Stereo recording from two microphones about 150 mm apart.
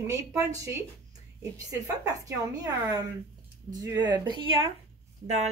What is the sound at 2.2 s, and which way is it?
Speech, 25° right (ahead or behind).